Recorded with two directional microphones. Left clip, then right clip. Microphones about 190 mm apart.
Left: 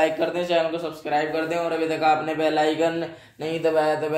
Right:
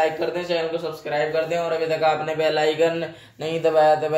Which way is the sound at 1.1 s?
15° left (ahead or behind).